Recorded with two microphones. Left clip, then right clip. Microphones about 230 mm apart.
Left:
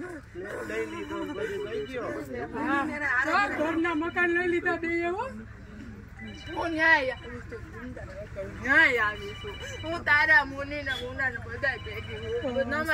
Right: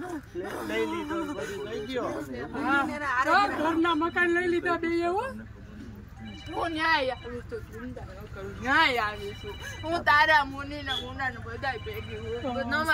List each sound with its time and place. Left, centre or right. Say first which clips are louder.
0.5 s a sound: right 3 dB; right
2.6 s speech: right 2 dB; centre
6.5 s speech: left 3 dB; centre
8.6 s speech: left 2 dB; centre